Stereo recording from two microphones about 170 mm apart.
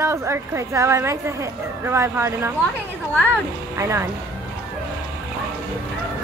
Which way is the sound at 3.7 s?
15° right (ahead or behind).